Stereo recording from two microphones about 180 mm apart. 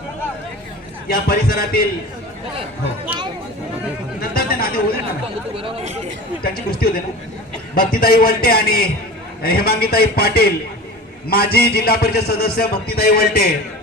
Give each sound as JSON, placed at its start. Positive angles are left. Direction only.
{"t": 1.0, "sound": "a man's voice", "side_deg": 55}
{"t": 4.2, "sound": "a sound", "side_deg": 55}
{"t": 5.5, "sound": "speech", "side_deg": -30}
{"t": 6.4, "sound": "a man's voice", "side_deg": 55}